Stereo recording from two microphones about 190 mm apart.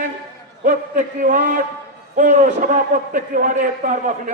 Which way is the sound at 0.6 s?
45° right (ahead or behind).